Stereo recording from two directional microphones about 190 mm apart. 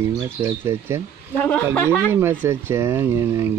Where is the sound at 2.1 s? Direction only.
10° right (ahead or behind).